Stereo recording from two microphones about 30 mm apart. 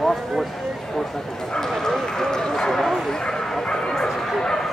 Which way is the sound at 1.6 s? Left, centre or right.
Centre.